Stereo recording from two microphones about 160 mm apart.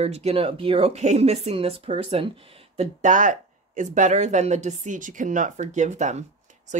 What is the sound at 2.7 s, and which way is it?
Speech, 50° right (ahead or behind).